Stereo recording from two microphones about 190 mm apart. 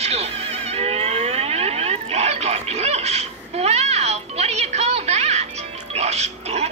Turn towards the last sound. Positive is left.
turn(degrees=-35)  # may be behind; listen again after turning